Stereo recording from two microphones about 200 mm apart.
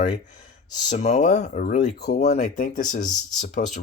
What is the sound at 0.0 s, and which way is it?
Speech, 40° left (ahead or behind).